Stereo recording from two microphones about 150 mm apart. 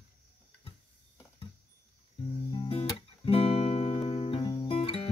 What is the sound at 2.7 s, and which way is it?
Music, 40° left (ahead or behind).